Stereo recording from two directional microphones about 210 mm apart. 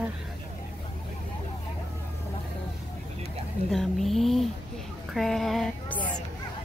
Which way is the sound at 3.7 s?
Centre (ahead or behind).